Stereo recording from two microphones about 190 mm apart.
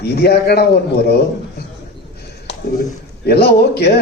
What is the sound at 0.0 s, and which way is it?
Speech, 55° left (ahead or behind).